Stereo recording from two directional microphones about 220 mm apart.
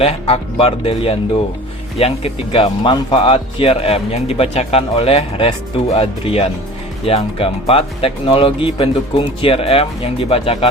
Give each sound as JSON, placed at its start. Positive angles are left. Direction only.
{"t": 0.0, "sound": "speech", "side_deg": 25}